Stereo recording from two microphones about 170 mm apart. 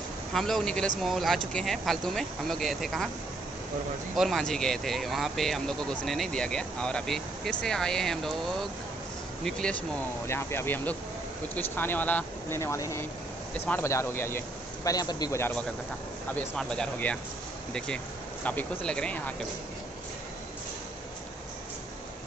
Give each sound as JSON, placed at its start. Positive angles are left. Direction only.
{"t": 0.3, "sound": "speech", "side_deg": 0}
{"t": 4.2, "sound": "speech", "side_deg": 0}
{"t": 10.2, "sound": "a man's voice", "side_deg": 15}